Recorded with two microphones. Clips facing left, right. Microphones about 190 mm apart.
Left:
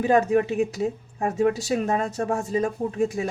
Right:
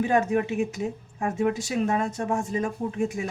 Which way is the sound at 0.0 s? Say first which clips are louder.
Left 3 dB; 35° left (ahead or behind).